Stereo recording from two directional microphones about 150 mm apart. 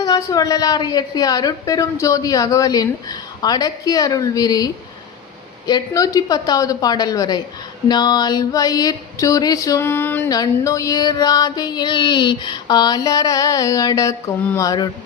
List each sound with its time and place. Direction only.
0.0 s a woman's voice: 25° left (ahead or behind)
10.2 s a woman's voice: 25° left (ahead or behind)